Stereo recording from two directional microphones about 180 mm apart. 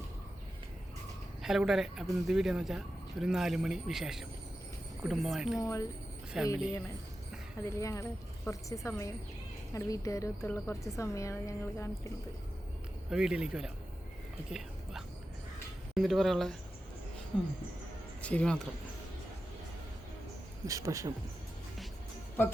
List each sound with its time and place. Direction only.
1.4 s speech: centre (ahead or behind)
5.5 s speech: 20° left (ahead or behind)
6.3 s speech: 5° right (ahead or behind)
7.8 s speech: 15° left (ahead or behind)
13.1 s speech: 5° right (ahead or behind)
16.0 s speech: centre (ahead or behind)
20.7 s speech: 15° right (ahead or behind)